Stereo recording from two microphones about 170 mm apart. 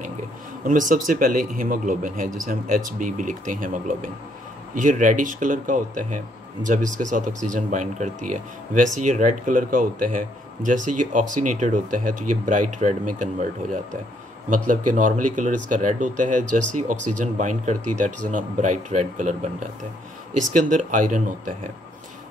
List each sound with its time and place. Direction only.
0.7 s speech: 50° right (ahead or behind)
20.7 s speech: 50° right (ahead or behind)